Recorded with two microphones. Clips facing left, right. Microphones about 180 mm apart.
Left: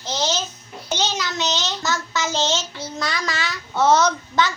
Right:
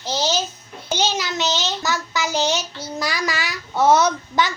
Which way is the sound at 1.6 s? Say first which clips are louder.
Right 1 dB; 15° right (ahead or behind).